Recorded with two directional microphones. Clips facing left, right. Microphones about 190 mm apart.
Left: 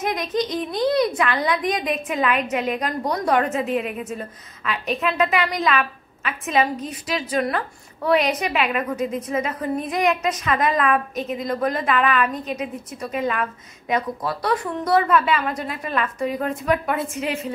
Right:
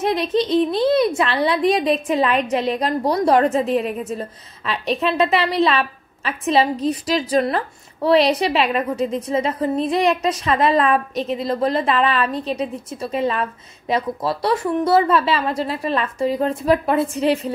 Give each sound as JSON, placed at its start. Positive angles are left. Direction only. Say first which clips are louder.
{"t": 0.0, "sound": "a woman's voice", "louder": "right 4 dB", "side_deg": -30}